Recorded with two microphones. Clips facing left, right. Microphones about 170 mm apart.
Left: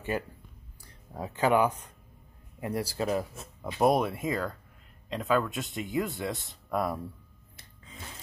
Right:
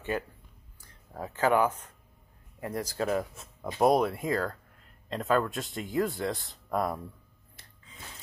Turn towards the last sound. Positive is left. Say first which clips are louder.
# even
turn(degrees=5)  # may be behind; listen again after turning